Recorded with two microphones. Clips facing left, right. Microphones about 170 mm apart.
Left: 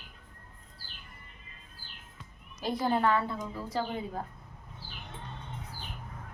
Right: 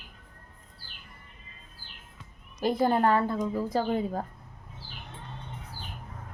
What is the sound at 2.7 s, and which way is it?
A woman's voice, 50° right (ahead or behind).